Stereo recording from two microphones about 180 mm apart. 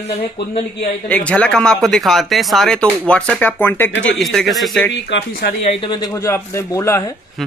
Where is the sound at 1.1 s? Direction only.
5° left (ahead or behind).